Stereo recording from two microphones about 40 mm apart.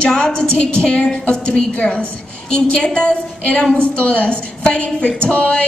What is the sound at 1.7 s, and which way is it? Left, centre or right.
Speech, left.